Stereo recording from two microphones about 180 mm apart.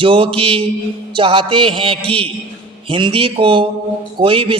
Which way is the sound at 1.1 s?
30° right (ahead or behind).